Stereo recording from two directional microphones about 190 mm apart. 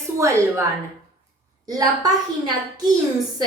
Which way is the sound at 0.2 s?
15° right (ahead or behind).